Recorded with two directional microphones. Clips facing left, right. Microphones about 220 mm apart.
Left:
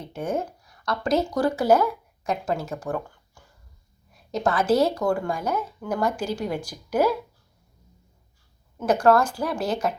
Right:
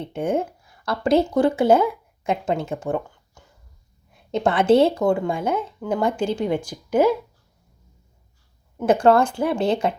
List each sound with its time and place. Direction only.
0.0 s a woman's voice: 30° right (ahead or behind)
8.9 s a woman's voice: 25° right (ahead or behind)